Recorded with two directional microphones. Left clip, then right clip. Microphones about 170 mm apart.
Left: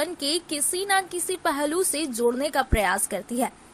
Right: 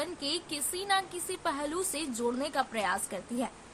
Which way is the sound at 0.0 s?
40° left (ahead or behind).